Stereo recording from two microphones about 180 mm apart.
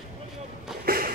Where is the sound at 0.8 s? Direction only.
55° right (ahead or behind).